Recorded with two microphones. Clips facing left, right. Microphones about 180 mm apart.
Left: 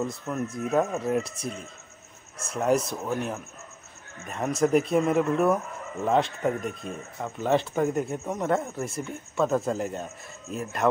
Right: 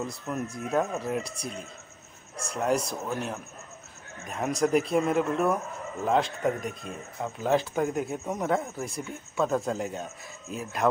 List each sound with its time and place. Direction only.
0.0 s speech: centre (ahead or behind)
1.2 s speech: 35° right (ahead or behind)
2.5 s speech: centre (ahead or behind)